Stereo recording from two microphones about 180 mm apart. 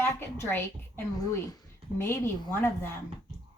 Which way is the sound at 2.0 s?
15° left (ahead or behind).